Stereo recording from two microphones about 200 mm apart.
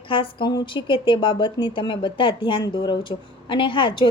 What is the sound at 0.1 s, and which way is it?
A woman's voice, 25° left (ahead or behind).